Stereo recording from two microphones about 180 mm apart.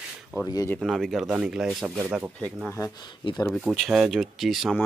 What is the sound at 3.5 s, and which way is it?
Speech, centre (ahead or behind).